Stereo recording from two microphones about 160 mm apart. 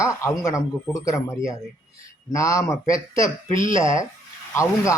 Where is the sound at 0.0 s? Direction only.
20° left (ahead or behind).